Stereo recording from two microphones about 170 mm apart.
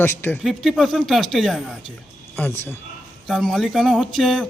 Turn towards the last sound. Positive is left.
turn(degrees=5)  # may be behind; listen again after turning